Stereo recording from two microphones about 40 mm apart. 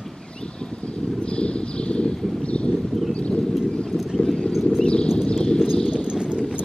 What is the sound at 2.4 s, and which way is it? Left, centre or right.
Horse, left.